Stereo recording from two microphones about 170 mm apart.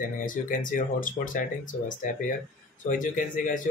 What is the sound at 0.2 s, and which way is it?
Speech, 50° left (ahead or behind).